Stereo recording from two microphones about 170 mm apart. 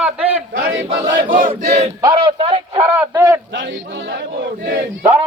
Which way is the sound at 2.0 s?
30° right (ahead or behind).